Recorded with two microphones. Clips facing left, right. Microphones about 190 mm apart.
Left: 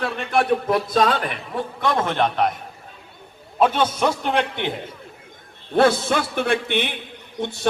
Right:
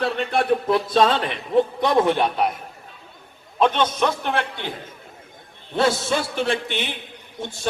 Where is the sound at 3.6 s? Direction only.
10° left (ahead or behind).